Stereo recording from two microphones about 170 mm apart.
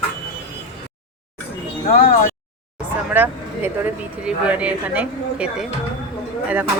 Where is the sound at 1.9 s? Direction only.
45° left (ahead or behind).